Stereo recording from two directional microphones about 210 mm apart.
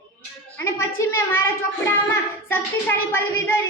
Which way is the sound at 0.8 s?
10° left (ahead or behind).